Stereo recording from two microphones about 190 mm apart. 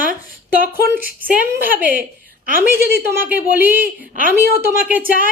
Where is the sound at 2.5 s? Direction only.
50° right (ahead or behind).